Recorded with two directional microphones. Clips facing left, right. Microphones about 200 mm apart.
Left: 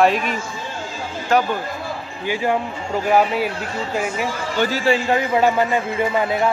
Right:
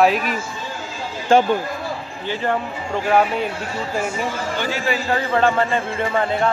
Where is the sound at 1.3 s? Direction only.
30° right (ahead or behind).